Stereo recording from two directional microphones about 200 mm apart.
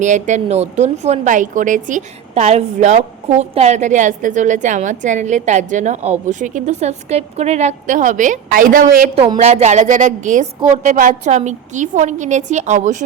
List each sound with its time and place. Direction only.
0.0 s a woman's voice: 35° right (ahead or behind)